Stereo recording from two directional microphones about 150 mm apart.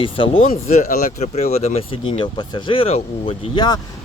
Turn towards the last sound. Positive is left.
turn(degrees=40)  # may be behind; listen again after turning